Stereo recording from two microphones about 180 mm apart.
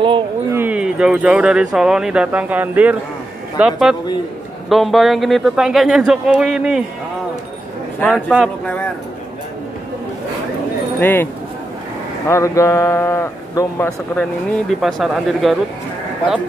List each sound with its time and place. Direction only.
0.5 s speech: 10° right (ahead or behind)
8.1 s speech: 5° right (ahead or behind)
11.0 s speech: 10° left (ahead or behind)
12.3 s a man's voice: 15° left (ahead or behind)
14.7 s speech: centre (ahead or behind)